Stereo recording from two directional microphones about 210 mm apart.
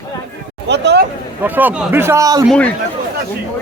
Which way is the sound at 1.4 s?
10° right (ahead or behind).